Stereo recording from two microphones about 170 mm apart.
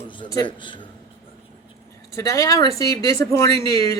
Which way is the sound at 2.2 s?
15° left (ahead or behind).